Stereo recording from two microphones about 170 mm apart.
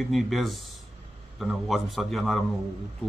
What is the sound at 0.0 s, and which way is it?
A man's voice, centre (ahead or behind).